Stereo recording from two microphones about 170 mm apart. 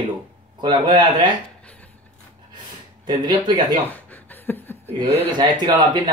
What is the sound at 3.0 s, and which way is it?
Speech, 25° right (ahead or behind).